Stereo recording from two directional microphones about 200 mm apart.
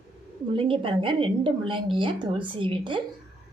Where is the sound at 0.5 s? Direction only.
25° right (ahead or behind).